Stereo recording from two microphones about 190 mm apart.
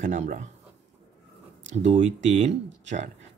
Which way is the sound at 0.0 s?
40° right (ahead or behind).